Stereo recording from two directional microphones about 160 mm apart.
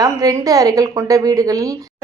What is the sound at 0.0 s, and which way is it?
A woman's voice, 20° right (ahead or behind).